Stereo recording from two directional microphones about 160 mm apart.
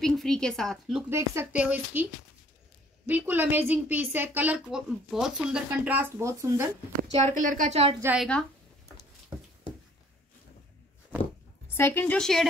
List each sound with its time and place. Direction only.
0.0 s a woman's voice: 5° left (ahead or behind)
1.1 s a woman's voice: 15° right (ahead or behind)
3.1 s a woman's voice: 10° right (ahead or behind)
7.2 s a woman's voice: 50° right (ahead or behind)
7.7 s a woman's voice: 40° right (ahead or behind)
8.2 s speech: 5° left (ahead or behind)
11.6 s a woman's voice: 15° left (ahead or behind)